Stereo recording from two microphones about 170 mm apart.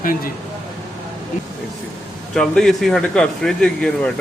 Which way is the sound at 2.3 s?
5° left (ahead or behind).